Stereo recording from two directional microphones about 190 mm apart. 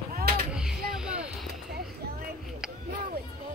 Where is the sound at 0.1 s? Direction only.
55° right (ahead or behind).